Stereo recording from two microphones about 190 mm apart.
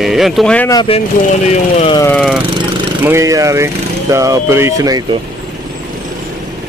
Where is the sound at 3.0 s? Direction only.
15° right (ahead or behind).